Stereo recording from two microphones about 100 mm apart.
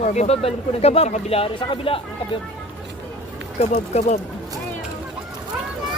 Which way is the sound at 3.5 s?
90° left.